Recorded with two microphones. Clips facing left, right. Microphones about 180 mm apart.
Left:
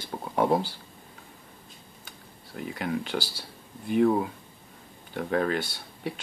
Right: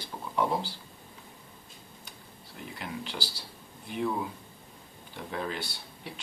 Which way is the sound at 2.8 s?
50° left (ahead or behind).